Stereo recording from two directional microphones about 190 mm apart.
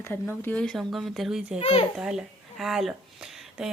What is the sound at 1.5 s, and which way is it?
Speech, 30° left (ahead or behind).